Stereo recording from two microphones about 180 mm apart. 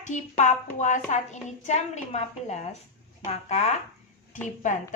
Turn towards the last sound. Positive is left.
turn(degrees=40)  # may be behind; listen again after turning